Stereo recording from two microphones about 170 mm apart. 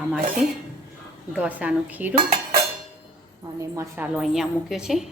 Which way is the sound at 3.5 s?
20° right (ahead or behind).